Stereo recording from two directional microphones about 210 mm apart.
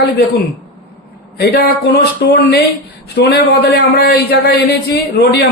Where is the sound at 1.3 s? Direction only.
50° left (ahead or behind).